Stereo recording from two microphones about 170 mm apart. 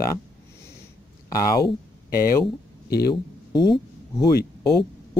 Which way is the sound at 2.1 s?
60° left (ahead or behind).